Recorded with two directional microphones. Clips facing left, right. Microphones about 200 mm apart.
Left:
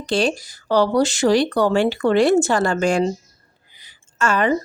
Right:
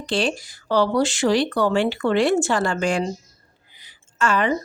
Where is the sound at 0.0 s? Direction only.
40° left (ahead or behind).